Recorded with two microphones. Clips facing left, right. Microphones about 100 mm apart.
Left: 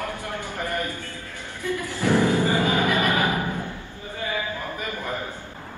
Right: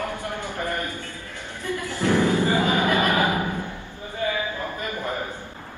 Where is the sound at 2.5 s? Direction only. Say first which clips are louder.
Right 1 dB; 15° right (ahead or behind).